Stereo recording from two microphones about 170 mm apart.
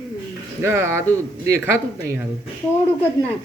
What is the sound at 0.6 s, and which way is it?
Speech, 15° right (ahead or behind).